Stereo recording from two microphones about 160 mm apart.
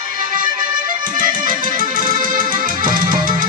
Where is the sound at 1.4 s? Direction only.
60° right (ahead or behind).